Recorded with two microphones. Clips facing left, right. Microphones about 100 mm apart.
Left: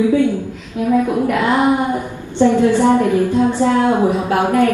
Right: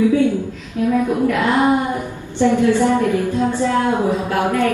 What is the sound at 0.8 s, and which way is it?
Speech, 20° left (ahead or behind).